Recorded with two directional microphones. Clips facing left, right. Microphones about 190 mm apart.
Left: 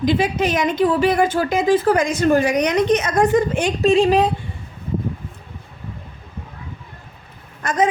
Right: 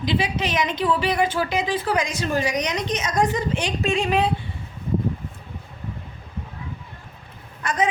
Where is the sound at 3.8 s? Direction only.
35° left (ahead or behind).